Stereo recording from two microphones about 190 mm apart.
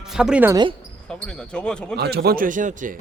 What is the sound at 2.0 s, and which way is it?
A man's voice, 60° right (ahead or behind).